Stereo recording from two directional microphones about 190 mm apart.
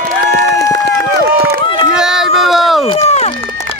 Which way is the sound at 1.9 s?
5° right (ahead or behind).